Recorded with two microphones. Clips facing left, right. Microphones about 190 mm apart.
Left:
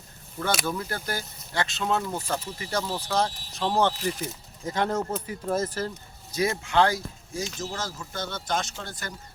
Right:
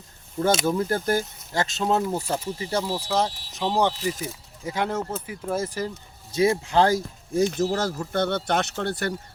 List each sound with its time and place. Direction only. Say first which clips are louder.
0.4 s speech: right 7 dB; 25° right (ahead or behind)
0.9 s speech: right 9 dB; 45° right (ahead or behind)
2.0 s speech: right 4 dB; 25° right (ahead or behind)
2.8 s speech: even; 15° right (ahead or behind)
6.3 s speech: right 4 dB; 30° right (ahead or behind)
7.3 s speech: right 11 dB; 55° right (ahead or behind)